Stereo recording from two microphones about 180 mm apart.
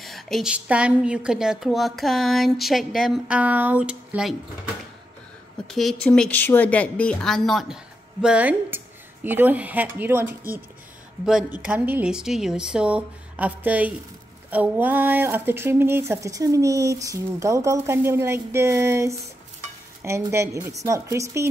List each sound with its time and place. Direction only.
0.0 s a woman's voice: centre (ahead or behind)
5.7 s a woman's voice: centre (ahead or behind)
11.6 s speech: 10° right (ahead or behind)